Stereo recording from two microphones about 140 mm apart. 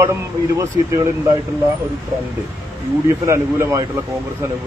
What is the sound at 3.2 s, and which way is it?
Speech, 20° right (ahead or behind).